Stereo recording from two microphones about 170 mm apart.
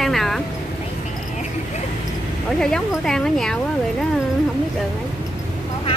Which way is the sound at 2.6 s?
5° left (ahead or behind).